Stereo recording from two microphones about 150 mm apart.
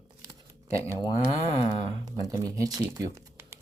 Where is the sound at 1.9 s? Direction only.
25° right (ahead or behind).